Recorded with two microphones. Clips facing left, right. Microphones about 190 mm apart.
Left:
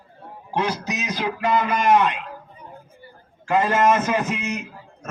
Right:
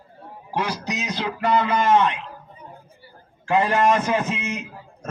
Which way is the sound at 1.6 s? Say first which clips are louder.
Even; 15° left (ahead or behind).